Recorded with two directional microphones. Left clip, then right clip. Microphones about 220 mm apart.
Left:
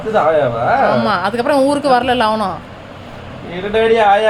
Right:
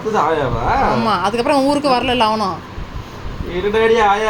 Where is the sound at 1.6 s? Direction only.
20° left (ahead or behind).